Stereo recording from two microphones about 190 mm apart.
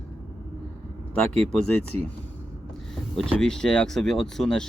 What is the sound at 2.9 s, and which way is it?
Speech, 5° left (ahead or behind).